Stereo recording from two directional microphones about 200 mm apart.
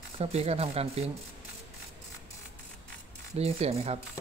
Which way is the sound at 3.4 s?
30° right (ahead or behind).